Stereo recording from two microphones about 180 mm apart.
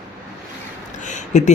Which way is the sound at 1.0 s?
45° left (ahead or behind).